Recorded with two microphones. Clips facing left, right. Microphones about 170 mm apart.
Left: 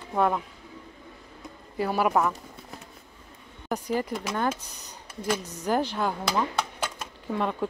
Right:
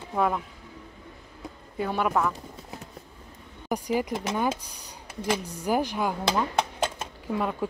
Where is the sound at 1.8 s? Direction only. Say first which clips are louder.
Left 2 dB; 5° left (ahead or behind).